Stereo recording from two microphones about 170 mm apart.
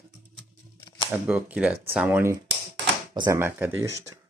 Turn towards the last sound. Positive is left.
turn(degrees=-20)  # may be behind; listen again after turning